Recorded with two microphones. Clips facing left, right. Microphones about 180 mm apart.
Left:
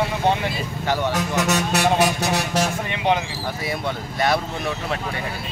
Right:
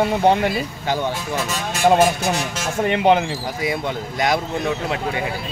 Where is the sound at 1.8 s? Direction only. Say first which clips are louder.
Right 8 dB; 45° right (ahead or behind).